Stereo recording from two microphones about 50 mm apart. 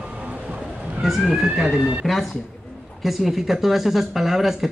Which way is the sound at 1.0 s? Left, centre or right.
Centre.